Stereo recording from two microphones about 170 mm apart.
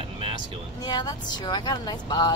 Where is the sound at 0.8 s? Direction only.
25° left (ahead or behind).